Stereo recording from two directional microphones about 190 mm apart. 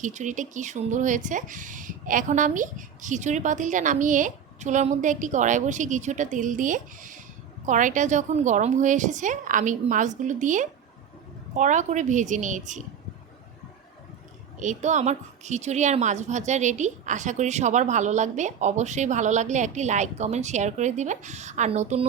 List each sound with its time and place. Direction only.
0.0 s a woman's voice: 40° right (ahead or behind)
14.6 s a woman's voice: 40° right (ahead or behind)